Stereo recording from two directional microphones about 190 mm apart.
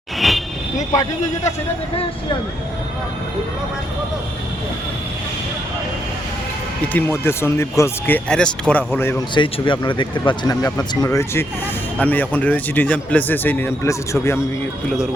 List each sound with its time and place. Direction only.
0.2 s vehicle: centre (ahead or behind)
6.9 s speech: 10° left (ahead or behind)
9.3 s speech: 25° left (ahead or behind)